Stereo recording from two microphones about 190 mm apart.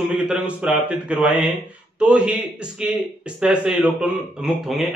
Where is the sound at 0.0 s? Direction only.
5° right (ahead or behind).